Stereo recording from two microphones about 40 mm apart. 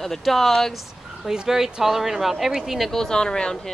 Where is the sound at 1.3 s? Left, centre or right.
Centre.